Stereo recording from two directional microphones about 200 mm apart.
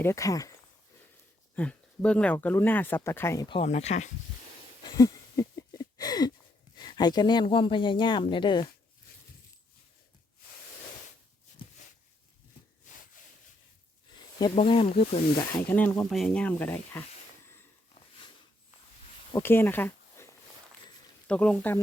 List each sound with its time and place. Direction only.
0.0 s speech: 15° left (ahead or behind)
1.5 s speech: 5° left (ahead or behind)
3.5 s speech: 30° left (ahead or behind)
4.8 s a sound: 20° left (ahead or behind)
6.7 s speech: 20° left (ahead or behind)
12.9 s a sound: 40° left (ahead or behind)
14.1 s a sound: 20° left (ahead or behind)
14.5 s speech: 30° left (ahead or behind)
15.7 s speech: 10° left (ahead or behind)
19.3 s speech: 10° left (ahead or behind)
21.2 s speech: 5° left (ahead or behind)